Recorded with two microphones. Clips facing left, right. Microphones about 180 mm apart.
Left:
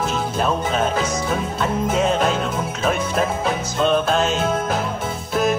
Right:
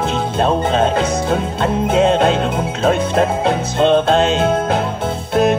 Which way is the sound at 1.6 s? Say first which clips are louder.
Right 6 dB; 60° right (ahead or behind).